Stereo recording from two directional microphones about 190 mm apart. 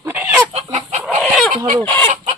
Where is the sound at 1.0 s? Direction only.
Centre (ahead or behind).